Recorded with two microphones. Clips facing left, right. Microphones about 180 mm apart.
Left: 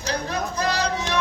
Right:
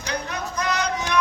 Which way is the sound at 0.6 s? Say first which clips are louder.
Right 1 dB; 30° left (ahead or behind).